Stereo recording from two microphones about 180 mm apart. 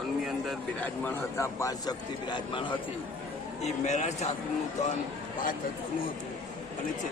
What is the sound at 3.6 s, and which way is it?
Speech, 40° left (ahead or behind).